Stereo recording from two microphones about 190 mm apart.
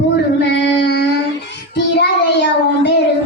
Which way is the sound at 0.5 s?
65° left (ahead or behind).